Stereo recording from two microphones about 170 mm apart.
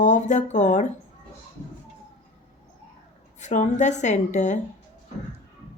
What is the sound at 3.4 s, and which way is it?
A woman's voice, 45° left (ahead or behind).